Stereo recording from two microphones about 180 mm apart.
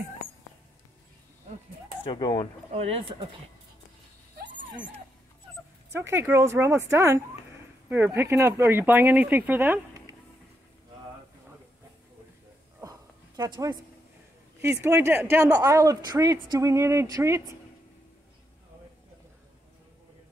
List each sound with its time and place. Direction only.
2.0 s speech: 25° left (ahead or behind)
2.7 s speech: 35° right (ahead or behind)
4.4 s a sound: 90° right
5.9 s speech: 15° right (ahead or behind)
13.4 s speech: 20° right (ahead or behind)